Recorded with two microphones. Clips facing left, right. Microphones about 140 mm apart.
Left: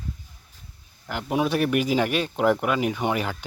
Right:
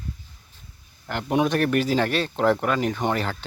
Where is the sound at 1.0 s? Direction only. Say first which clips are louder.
Right 2 dB; 5° left (ahead or behind).